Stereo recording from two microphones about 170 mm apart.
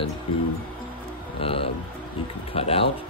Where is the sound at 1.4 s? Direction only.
35° left (ahead or behind).